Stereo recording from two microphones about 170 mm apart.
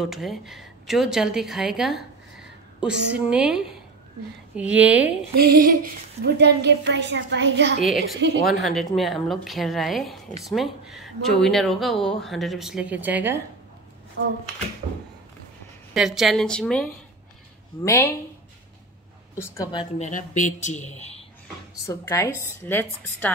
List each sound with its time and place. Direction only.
0.0 s a woman's voice: centre (ahead or behind)
5.3 s a sound: 60° right (ahead or behind); by 7.7 s 90° right
8.5 s a woman's voice: centre (ahead or behind)
14.2 s a sound: 90° right
15.9 s a woman's voice: centre (ahead or behind)
17.8 s a woman's voice: 15° left (ahead or behind)
19.3 s a woman's voice: 15° left (ahead or behind)
20.0 s speech: 50° left (ahead or behind)
21.8 s a woman's voice: 20° left (ahead or behind)